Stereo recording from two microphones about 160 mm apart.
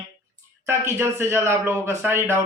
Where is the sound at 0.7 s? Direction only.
15° right (ahead or behind).